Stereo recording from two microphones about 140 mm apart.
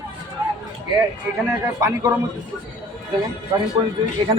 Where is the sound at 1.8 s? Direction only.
20° right (ahead or behind).